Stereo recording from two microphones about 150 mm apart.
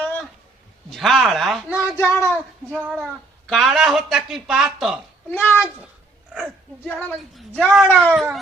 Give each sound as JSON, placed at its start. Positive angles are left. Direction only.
{"t": 0.9, "sound": "speech", "side_deg": 0}
{"t": 1.7, "sound": "a sound", "side_deg": 15}
{"t": 2.6, "sound": "speech", "side_deg": -10}
{"t": 5.3, "sound": "speech", "side_deg": 15}
{"t": 7.5, "sound": "speech", "side_deg": 10}